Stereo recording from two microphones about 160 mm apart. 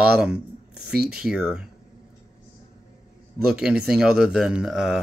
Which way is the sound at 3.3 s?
5° right (ahead or behind).